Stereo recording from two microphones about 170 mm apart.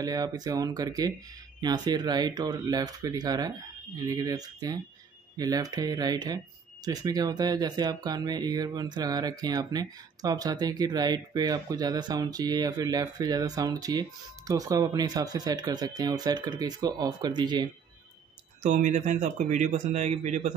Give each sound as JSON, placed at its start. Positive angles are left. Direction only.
{"t": 0.0, "sound": "speech", "side_deg": -20}
{"t": 18.6, "sound": "speech", "side_deg": -45}